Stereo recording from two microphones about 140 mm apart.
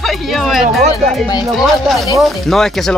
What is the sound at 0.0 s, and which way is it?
Speech, centre (ahead or behind).